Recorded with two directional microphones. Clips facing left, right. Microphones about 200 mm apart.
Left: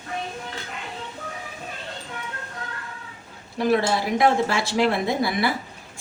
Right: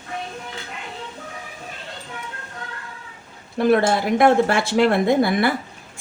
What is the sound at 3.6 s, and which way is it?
Speech, 55° right (ahead or behind).